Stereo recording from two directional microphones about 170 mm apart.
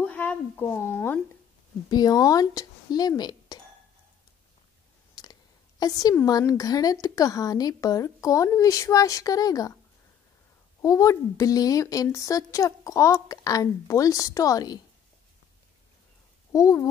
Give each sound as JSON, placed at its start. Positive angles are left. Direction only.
{"t": 0.0, "sound": "a woman's voice", "side_deg": 10}
{"t": 1.9, "sound": "a woman's voice", "side_deg": 25}
{"t": 5.1, "sound": "a woman's voice", "side_deg": 25}
{"t": 10.8, "sound": "a woman's voice", "side_deg": 20}
{"t": 16.5, "sound": "a woman's voice", "side_deg": 20}